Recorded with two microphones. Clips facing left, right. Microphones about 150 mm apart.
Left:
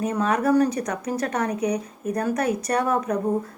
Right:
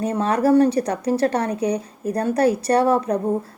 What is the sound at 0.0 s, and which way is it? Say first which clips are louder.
A woman's voice: right 3 dB; 30° right (ahead or behind).